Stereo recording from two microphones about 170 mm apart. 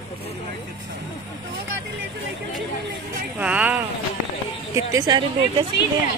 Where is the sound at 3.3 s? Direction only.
10° right (ahead or behind).